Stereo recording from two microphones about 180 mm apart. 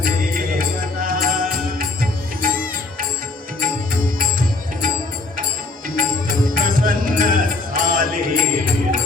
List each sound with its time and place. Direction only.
0.0 s music: 50° right (ahead or behind)
3.6 s music: 50° right (ahead or behind)
6.0 s music: 50° right (ahead or behind)